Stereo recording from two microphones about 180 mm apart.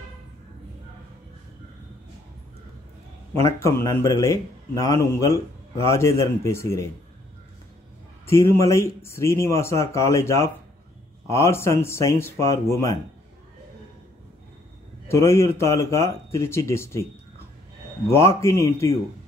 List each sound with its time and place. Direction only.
3.3 s a man's voice: 15° left (ahead or behind)
8.3 s a man's voice: 15° left (ahead or behind)
15.0 s a man's voice: 15° left (ahead or behind)
18.0 s a man's voice: 15° left (ahead or behind)